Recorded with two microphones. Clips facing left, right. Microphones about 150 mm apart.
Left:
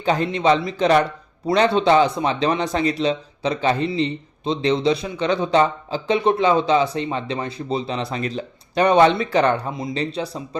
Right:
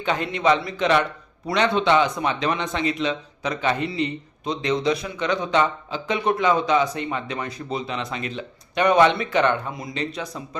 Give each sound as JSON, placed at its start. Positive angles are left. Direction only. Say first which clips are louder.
{"t": 0.0, "sound": "speech", "louder": "left 3 dB", "side_deg": 35}